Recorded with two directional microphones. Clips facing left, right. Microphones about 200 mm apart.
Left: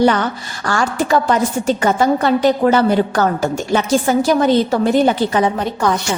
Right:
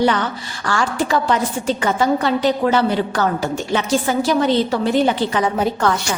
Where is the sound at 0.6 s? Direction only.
45° left (ahead or behind).